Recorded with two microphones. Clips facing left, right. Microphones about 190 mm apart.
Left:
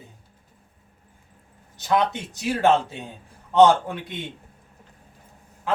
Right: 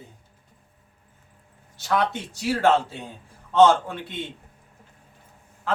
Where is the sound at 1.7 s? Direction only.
15° left (ahead or behind).